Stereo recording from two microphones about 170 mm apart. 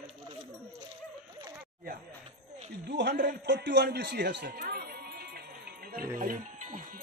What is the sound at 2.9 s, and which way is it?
A man's voice, 85° right.